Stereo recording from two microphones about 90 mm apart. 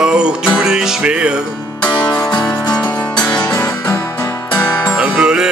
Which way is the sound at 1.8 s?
15° left (ahead or behind).